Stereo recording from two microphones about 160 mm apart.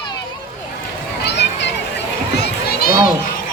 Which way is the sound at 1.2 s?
90° left.